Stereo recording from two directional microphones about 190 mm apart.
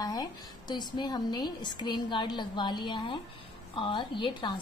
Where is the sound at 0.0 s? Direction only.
20° left (ahead or behind).